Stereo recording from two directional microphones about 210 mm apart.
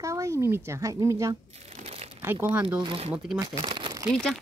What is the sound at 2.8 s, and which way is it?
Speech, 25° right (ahead or behind).